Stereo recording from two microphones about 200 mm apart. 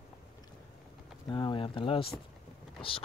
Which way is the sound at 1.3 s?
25° left (ahead or behind).